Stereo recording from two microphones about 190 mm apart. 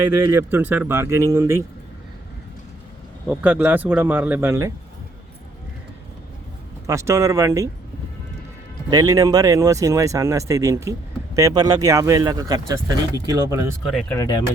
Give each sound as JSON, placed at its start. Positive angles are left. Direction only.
{"t": 0.3, "sound": "speech", "side_deg": -10}
{"t": 3.2, "sound": "speech", "side_deg": -10}
{"t": 6.8, "sound": "speech", "side_deg": -15}
{"t": 8.9, "sound": "speech", "side_deg": -20}
{"t": 13.8, "sound": "speech", "side_deg": 5}
{"t": 14.2, "sound": "speech", "side_deg": 20}